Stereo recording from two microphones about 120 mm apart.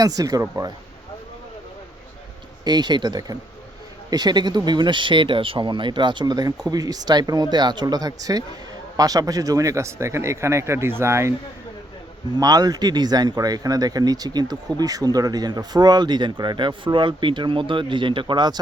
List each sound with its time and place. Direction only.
0.0 s speech: 30° right (ahead or behind)
2.6 s speech: 35° right (ahead or behind)
12.4 s speech: 30° right (ahead or behind)